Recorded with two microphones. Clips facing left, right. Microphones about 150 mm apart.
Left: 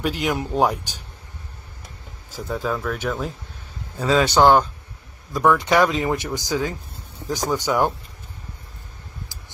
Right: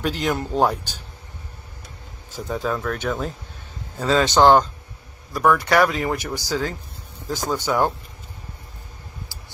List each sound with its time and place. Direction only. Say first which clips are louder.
0.0 s speech: even; 10° left (ahead or behind)
2.3 s a man's voice: even; 5° left (ahead or behind)
5.3 s speech: even; 15° left (ahead or behind)